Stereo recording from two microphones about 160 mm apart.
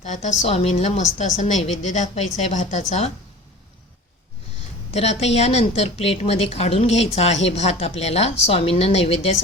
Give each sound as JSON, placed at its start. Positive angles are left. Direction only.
{"t": 0.0, "sound": "a woman's voice", "side_deg": 50}
{"t": 4.9, "sound": "a woman's voice", "side_deg": 40}